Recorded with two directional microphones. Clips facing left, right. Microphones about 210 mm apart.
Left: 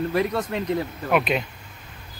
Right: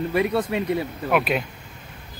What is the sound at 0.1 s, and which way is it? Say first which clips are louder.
Speech: right 2 dB; 5° right (ahead or behind).